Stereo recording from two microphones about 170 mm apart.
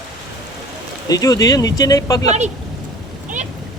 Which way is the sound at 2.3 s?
40° right (ahead or behind).